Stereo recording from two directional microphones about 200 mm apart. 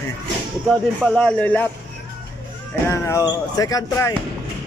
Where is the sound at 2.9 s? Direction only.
15° left (ahead or behind).